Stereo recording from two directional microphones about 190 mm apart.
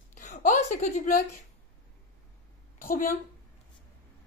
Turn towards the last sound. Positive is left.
turn(degrees=50)  # may be behind; listen again after turning